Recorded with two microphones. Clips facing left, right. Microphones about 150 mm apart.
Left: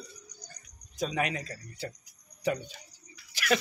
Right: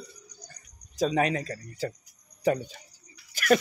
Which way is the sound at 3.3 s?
45° right (ahead or behind).